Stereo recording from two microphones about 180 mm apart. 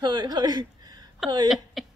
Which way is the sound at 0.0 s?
20° right (ahead or behind).